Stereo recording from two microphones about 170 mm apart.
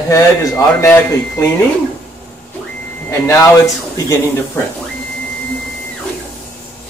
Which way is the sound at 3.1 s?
15° left (ahead or behind).